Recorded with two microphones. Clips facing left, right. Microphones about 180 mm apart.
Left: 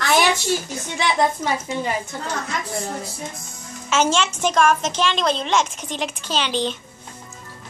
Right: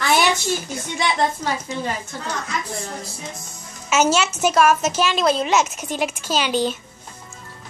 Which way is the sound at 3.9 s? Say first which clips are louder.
Right 1 dB; 5° right (ahead or behind).